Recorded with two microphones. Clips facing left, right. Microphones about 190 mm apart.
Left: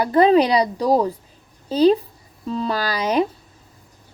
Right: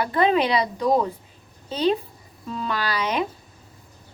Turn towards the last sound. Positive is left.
turn(degrees=40)  # may be behind; listen again after turning